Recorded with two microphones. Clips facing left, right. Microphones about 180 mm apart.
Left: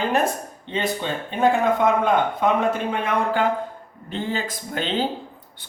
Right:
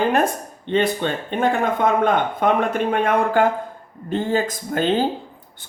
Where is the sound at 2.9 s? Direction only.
55° right (ahead or behind).